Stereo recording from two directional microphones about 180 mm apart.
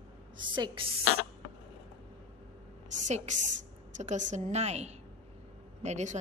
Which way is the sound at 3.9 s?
40° right (ahead or behind).